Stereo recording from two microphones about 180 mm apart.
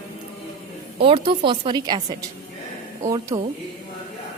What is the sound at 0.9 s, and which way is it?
A woman's voice, 30° right (ahead or behind).